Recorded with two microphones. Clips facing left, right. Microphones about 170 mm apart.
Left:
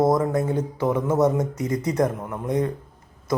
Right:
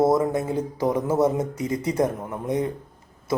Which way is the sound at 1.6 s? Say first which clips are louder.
Even; 30° right (ahead or behind).